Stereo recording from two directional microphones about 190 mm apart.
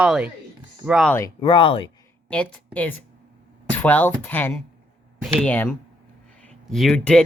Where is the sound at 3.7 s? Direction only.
10° left (ahead or behind).